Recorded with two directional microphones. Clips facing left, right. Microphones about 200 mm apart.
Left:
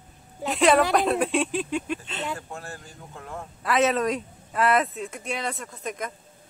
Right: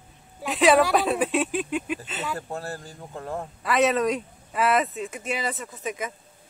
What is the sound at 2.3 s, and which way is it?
Speech, 35° right (ahead or behind).